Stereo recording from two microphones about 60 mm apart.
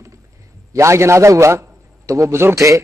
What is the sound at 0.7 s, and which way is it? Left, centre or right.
A man's voice, right.